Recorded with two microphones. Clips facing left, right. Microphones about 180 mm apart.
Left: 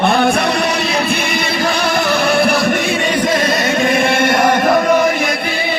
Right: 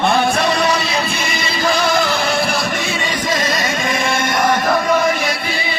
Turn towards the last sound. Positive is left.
turn(degrees=55)  # may be behind; listen again after turning